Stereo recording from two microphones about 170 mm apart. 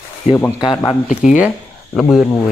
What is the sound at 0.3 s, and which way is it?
Speech, 40° left (ahead or behind).